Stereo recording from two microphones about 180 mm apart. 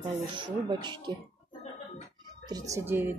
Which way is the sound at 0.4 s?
25° right (ahead or behind).